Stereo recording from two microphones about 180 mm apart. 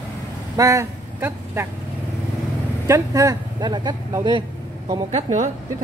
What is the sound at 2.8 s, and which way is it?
Speech, 15° right (ahead or behind).